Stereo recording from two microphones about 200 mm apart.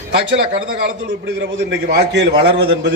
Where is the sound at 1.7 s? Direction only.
60° right (ahead or behind).